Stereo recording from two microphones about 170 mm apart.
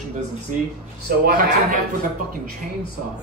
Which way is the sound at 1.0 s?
60° right (ahead or behind).